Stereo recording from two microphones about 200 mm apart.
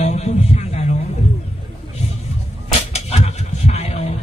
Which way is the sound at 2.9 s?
35° left (ahead or behind).